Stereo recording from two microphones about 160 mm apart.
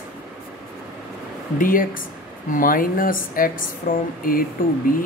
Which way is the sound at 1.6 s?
60° left (ahead or behind).